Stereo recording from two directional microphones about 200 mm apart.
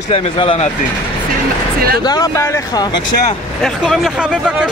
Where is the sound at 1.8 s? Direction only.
50° right (ahead or behind).